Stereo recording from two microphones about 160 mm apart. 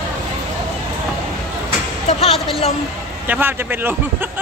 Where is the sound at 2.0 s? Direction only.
40° left (ahead or behind).